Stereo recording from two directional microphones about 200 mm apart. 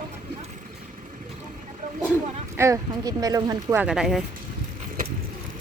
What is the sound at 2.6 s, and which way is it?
Speech, 15° right (ahead or behind).